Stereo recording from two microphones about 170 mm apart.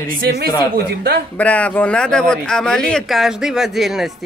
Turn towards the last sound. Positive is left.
turn(degrees=0)  # may be behind; listen again after turning